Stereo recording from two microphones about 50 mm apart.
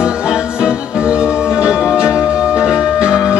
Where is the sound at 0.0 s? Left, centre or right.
Centre.